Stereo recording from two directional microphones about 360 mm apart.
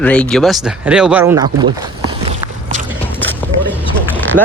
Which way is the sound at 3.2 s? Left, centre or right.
Centre.